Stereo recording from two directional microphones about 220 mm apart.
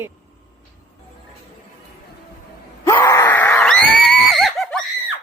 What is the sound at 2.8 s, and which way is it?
Screaming, 10° left (ahead or behind).